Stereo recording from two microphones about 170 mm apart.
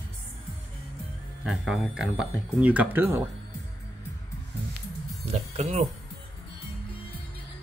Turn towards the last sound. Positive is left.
turn(degrees=-40)  # may be behind; listen again after turning